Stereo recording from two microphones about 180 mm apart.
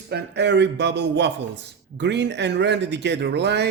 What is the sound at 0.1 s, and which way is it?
Speech, 70° right (ahead or behind).